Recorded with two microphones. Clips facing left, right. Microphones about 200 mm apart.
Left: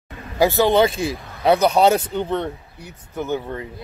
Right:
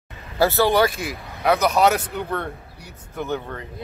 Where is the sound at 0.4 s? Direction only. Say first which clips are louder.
Left 2 dB; 15° left (ahead or behind).